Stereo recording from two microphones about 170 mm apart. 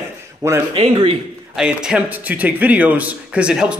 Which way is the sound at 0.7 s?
35° right (ahead or behind).